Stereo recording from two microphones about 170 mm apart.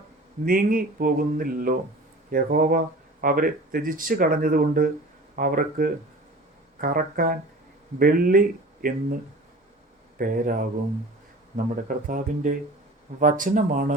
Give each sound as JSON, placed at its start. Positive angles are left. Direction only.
{"t": 0.4, "sound": "speech", "side_deg": -55}
{"t": 10.2, "sound": "speech", "side_deg": -55}